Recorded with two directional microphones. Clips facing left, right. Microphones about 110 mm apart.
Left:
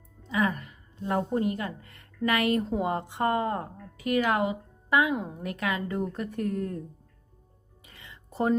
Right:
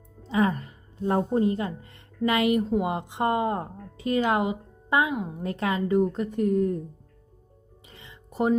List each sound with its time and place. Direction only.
0.2 s a woman's voice: 30° right (ahead or behind)
7.9 s music: 20° right (ahead or behind)